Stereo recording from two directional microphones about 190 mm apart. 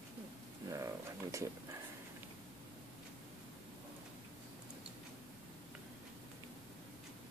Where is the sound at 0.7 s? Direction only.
15° right (ahead or behind).